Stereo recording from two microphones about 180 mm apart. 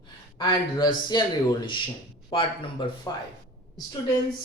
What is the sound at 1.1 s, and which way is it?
Speech, 25° left (ahead or behind).